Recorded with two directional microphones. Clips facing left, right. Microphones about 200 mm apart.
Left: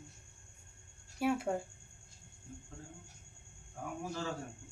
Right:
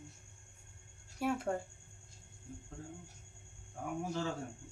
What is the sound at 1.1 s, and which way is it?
Speech, centre (ahead or behind).